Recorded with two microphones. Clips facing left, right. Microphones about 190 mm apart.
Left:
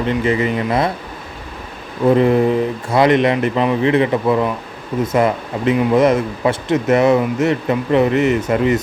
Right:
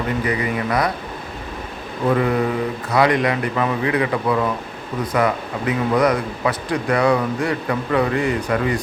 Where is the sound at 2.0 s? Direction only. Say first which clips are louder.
Left 6 dB; 25° left (ahead or behind).